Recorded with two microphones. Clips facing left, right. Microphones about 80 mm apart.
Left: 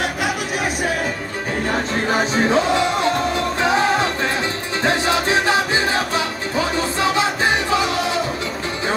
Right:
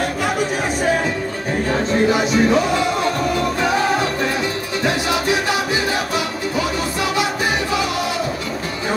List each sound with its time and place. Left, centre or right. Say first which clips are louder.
2.1 s music: right 1 dB; left
4.8 s music: left 1 dB; left